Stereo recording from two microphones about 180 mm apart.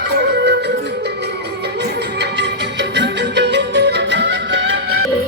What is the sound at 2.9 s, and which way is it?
Music, 75° right (ahead or behind).